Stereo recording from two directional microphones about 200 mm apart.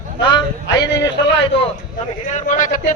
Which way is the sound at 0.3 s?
20° left (ahead or behind).